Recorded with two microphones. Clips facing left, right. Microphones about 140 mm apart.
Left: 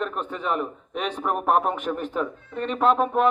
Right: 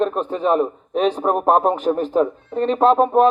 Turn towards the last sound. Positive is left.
turn(degrees=-35)  # may be behind; listen again after turning